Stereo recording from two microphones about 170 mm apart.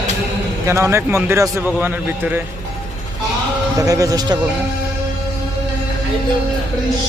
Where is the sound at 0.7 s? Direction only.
15° right (ahead or behind).